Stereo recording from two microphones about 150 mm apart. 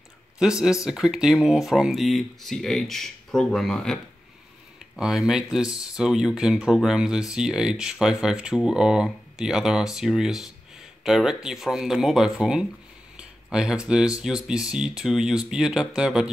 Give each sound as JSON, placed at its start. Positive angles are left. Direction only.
{"t": 0.4, "sound": "speech", "side_deg": -5}